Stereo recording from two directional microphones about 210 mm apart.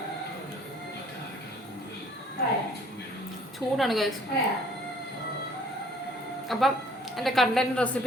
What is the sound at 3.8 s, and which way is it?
Speech, centre (ahead or behind).